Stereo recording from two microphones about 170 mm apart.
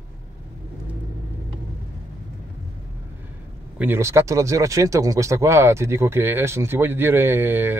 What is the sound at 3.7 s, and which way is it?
Speech, 15° right (ahead or behind).